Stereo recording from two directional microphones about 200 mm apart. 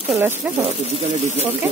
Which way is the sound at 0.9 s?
30° right (ahead or behind).